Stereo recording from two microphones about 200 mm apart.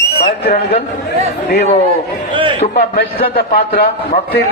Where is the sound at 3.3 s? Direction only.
50° left (ahead or behind).